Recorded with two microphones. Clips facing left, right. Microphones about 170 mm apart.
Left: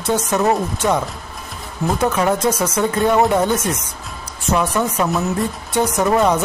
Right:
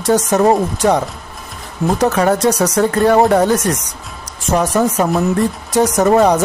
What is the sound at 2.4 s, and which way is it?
Speech, 80° right.